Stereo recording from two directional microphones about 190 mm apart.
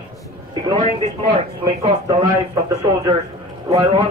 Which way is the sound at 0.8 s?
30° right (ahead or behind).